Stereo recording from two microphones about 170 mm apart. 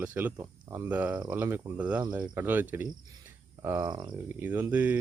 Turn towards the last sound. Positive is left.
turn(degrees=-10)  # may be behind; listen again after turning